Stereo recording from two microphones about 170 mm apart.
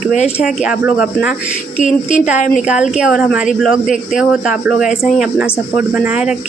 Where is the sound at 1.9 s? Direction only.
45° left (ahead or behind).